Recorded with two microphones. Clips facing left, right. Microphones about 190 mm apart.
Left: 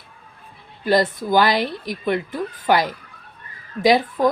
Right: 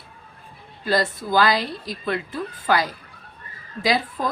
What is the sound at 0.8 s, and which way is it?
Speech, 20° left (ahead or behind).